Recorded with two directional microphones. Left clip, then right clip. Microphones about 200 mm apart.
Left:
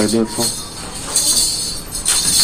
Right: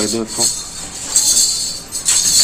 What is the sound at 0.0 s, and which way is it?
Speech, 15° right (ahead or behind).